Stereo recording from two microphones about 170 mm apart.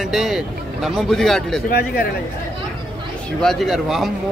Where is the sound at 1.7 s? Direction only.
65° left (ahead or behind).